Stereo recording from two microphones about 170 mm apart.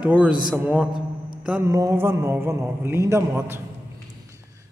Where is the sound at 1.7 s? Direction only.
15° right (ahead or behind).